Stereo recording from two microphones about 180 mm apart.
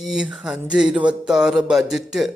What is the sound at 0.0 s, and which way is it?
Speech, 5° right (ahead or behind).